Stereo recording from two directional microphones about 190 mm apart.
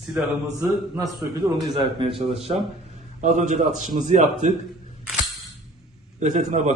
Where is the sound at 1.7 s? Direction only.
25° right (ahead or behind).